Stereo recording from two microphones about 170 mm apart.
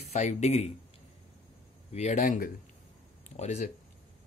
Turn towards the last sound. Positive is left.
turn(degrees=45)  # may be behind; listen again after turning